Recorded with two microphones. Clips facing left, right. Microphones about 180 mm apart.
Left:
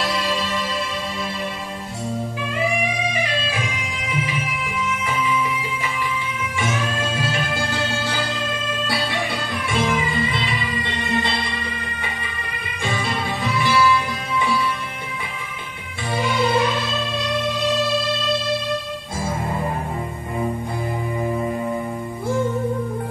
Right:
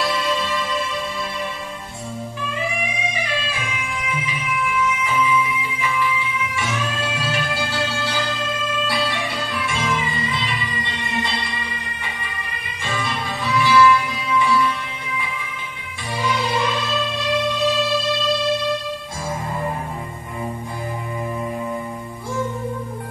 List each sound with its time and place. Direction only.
13.4 s music: 50° left (ahead or behind)